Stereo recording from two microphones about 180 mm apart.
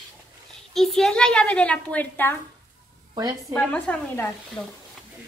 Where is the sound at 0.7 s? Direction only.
Centre (ahead or behind).